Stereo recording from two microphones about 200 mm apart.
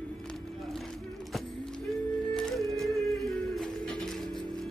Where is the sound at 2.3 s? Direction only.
Centre (ahead or behind).